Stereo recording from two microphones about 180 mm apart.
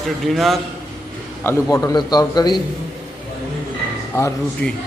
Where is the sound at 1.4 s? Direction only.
15° left (ahead or behind).